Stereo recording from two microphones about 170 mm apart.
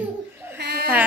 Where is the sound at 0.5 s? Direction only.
75° right (ahead or behind).